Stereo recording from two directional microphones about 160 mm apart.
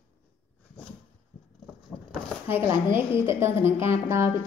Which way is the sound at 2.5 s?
15° right (ahead or behind).